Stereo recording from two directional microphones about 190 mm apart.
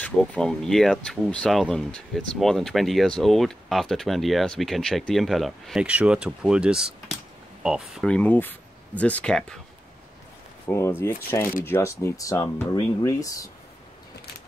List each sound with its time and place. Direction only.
0.0 s speech: 5° left (ahead or behind)
10.7 s speech: 15° left (ahead or behind)